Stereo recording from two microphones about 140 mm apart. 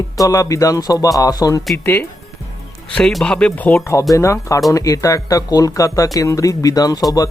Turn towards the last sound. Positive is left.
turn(degrees=25)  # may be behind; listen again after turning